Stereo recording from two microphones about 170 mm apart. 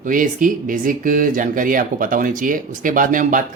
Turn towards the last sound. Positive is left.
turn(degrees=-50)  # may be behind; listen again after turning